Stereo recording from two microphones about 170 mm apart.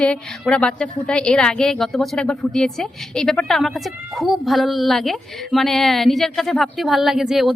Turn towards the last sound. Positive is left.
turn(degrees=0)  # may be behind; listen again after turning